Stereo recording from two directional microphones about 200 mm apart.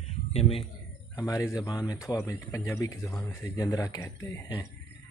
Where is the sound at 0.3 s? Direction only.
30° left (ahead or behind).